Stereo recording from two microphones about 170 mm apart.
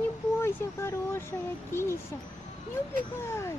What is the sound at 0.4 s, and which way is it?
Vehicle, 15° left (ahead or behind).